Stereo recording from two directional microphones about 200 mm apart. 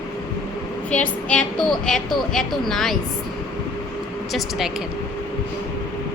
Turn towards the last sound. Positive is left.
turn(degrees=0)  # may be behind; listen again after turning